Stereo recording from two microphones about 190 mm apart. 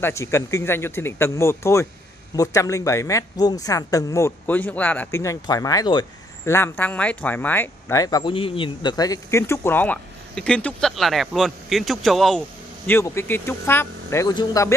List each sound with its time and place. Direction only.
0.0 s speech: 15° left (ahead or behind)
6.5 s speech: 10° left (ahead or behind)